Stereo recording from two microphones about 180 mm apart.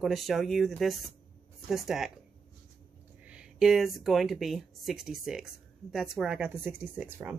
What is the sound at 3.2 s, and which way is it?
Speech, 5° right (ahead or behind).